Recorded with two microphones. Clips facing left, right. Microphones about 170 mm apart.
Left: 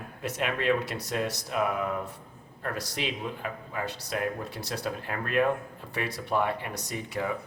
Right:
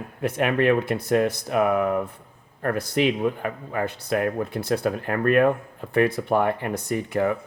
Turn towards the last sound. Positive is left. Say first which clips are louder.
# right 9 dB
turn(degrees=-60)  # may be behind; listen again after turning